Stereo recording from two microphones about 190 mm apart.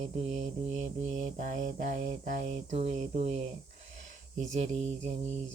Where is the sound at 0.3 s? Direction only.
35° right (ahead or behind).